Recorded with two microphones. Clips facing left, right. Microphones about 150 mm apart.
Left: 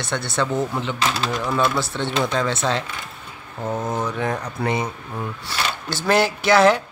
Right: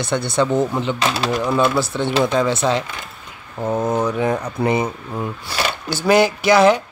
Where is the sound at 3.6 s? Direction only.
25° right (ahead or behind).